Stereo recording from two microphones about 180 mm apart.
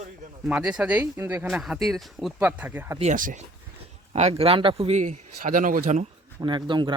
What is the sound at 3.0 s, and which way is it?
A man's voice, 45° right (ahead or behind).